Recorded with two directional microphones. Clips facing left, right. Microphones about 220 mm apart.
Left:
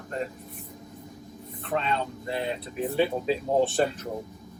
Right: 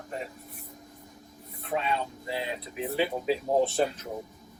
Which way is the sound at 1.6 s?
10° right (ahead or behind).